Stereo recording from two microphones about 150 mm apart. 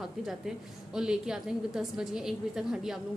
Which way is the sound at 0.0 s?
Centre (ahead or behind).